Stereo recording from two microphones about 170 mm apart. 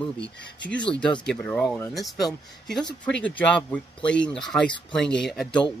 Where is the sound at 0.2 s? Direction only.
90° left.